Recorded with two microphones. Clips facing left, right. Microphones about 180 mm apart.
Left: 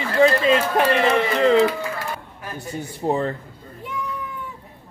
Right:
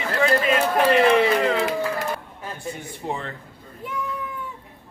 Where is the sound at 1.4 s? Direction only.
30° left (ahead or behind).